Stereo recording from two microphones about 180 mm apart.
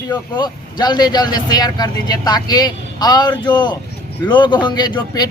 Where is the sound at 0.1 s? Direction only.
25° left (ahead or behind).